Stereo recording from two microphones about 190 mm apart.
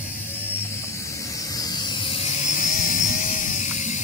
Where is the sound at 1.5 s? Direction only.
20° left (ahead or behind).